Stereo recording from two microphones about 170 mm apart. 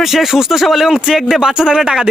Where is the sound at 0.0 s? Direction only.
Centre (ahead or behind).